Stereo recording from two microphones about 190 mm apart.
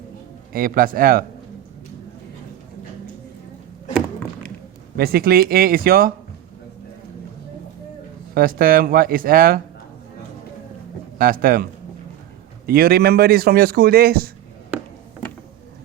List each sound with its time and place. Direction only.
0.5 s a man's voice: 50° right (ahead or behind)
4.9 s a man's voice: 55° right (ahead or behind)
8.4 s a man's voice: 50° right (ahead or behind)
11.2 s a man's voice: 50° right (ahead or behind)